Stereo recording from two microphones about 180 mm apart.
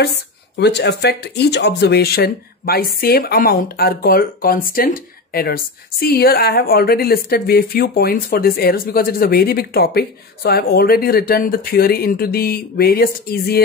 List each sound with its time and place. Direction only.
0.0 s speech: 65° left (ahead or behind)